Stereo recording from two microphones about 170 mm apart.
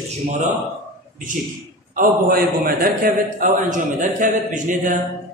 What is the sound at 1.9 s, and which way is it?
A man's voice, 60° right (ahead or behind).